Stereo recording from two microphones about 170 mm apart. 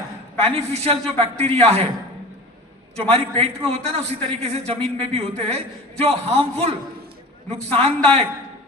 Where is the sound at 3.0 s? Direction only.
35° right (ahead or behind).